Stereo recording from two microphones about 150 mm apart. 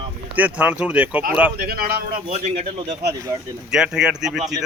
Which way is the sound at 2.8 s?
25° right (ahead or behind).